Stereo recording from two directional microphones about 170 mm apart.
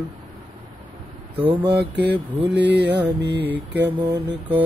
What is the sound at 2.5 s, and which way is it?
Mantra, 90° right.